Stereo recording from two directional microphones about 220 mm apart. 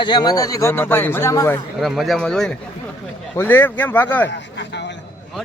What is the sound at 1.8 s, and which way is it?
Speech, centre (ahead or behind).